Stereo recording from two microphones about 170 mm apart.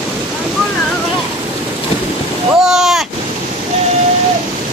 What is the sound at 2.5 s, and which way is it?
Speech, centre (ahead or behind).